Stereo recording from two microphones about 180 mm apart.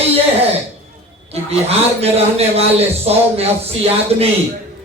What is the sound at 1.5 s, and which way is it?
A man's voice, 35° right (ahead or behind).